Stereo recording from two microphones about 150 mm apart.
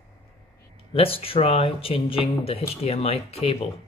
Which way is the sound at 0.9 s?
40° left (ahead or behind).